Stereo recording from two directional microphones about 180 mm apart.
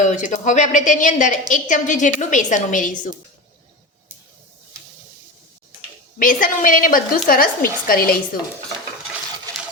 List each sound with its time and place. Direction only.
0.0 s a woman's voice: 40° left (ahead or behind)
6.1 s a woman's voice: 50° left (ahead or behind)